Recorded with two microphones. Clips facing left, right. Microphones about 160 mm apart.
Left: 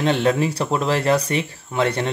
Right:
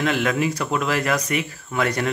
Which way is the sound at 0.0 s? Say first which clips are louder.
Left 3 dB; 30° left (ahead or behind).